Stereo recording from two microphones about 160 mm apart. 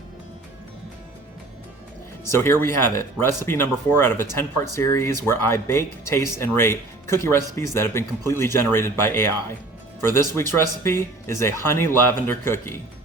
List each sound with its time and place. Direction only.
2.2 s speech: 15° left (ahead or behind)